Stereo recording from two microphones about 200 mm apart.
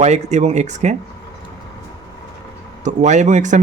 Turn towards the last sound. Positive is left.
turn(degrees=-35)  # may be behind; listen again after turning